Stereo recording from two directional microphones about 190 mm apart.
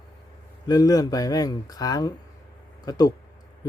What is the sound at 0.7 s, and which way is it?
Speech, 20° left (ahead or behind).